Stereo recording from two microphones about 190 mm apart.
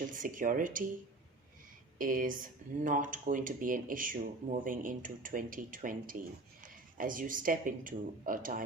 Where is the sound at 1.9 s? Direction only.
45° right (ahead or behind).